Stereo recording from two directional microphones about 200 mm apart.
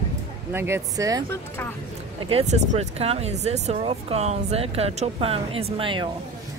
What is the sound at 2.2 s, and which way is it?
Speech, 30° right (ahead or behind).